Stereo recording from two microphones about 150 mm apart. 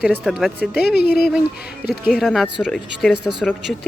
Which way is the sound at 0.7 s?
90° left.